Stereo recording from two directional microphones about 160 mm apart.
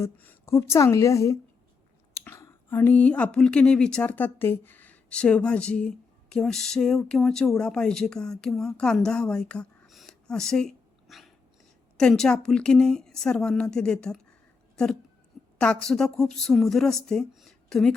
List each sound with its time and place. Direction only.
0.0 s a woman's voice: 15° left (ahead or behind)